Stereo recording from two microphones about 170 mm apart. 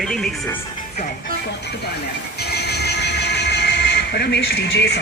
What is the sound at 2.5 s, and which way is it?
Train, 75° left (ahead or behind).